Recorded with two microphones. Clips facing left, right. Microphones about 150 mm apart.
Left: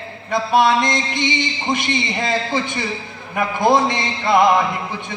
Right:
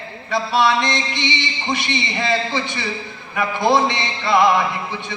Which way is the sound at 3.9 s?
50° left (ahead or behind).